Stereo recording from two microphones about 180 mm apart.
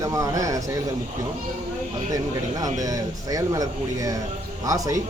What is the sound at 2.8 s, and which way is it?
Speech, 20° right (ahead or behind).